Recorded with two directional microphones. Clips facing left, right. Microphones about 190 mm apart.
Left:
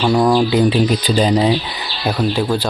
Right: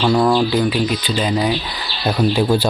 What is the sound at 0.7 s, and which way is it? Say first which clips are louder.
Speech: left 4 dB; 35° left (ahead or behind).